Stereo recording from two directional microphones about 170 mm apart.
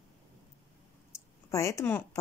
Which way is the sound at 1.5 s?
15° left (ahead or behind).